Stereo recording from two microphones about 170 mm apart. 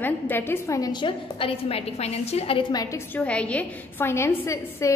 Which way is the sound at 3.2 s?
5° left (ahead or behind).